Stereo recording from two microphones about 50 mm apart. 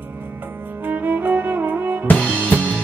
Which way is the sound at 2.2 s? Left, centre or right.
Left.